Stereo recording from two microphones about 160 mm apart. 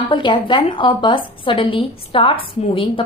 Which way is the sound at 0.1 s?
30° left (ahead or behind).